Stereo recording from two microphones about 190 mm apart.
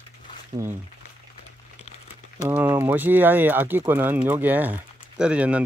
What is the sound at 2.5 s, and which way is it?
Speech, 10° right (ahead or behind).